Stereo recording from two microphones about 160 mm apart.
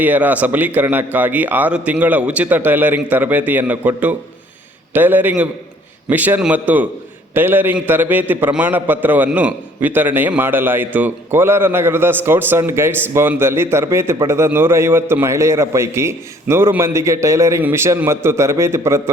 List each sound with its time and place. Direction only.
0.0 s a man's voice: 10° right (ahead or behind)